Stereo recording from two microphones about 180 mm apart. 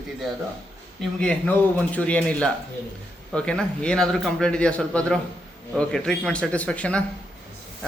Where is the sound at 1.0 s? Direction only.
5° left (ahead or behind).